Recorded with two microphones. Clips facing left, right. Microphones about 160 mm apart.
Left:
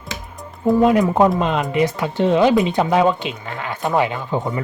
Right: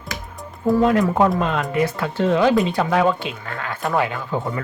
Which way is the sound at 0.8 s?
20° left (ahead or behind).